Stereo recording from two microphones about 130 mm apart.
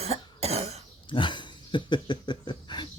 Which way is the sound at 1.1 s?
40° left (ahead or behind).